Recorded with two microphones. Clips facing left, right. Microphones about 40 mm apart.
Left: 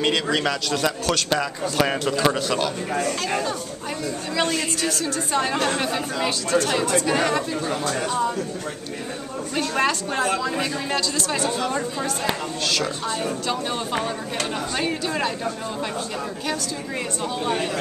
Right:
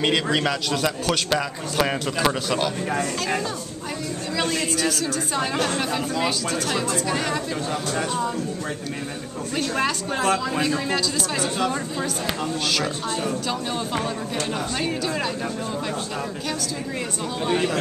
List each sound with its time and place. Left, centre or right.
0.0 s a man's voice: centre
4.7 s a man's voice: centre
9.6 s a man's voice: centre
12.7 s a woman's voice: centre